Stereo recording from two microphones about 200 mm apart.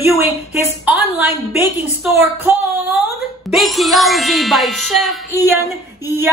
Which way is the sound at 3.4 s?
Centre (ahead or behind).